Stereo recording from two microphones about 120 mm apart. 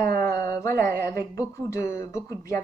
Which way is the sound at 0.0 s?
25° left (ahead or behind).